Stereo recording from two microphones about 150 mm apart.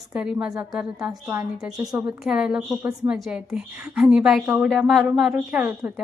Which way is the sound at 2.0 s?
5° right (ahead or behind).